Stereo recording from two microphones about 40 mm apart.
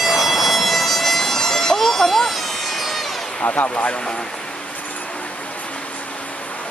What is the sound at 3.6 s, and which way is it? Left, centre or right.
Speech, left.